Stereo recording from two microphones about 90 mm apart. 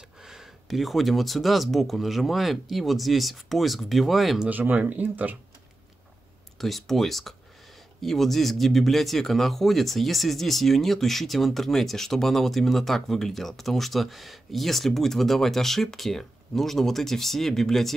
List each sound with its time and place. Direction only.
0.2 s speech: 5° right (ahead or behind)
4.5 s speech: 20° right (ahead or behind)
6.6 s speech: 5° left (ahead or behind)